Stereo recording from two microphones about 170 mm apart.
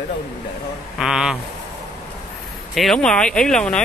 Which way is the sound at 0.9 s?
5° right (ahead or behind).